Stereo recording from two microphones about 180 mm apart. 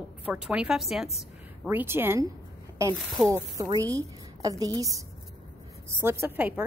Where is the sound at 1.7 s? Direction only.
15° right (ahead or behind).